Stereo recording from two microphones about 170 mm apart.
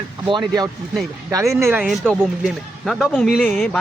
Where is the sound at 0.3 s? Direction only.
25° right (ahead or behind).